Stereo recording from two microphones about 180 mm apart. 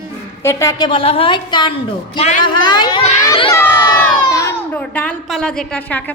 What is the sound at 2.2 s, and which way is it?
Speech, 40° left (ahead or behind).